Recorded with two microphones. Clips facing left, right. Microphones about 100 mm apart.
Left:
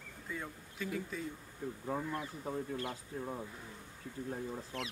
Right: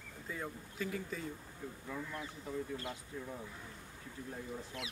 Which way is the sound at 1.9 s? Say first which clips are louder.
Left 4 dB; 45° left (ahead or behind).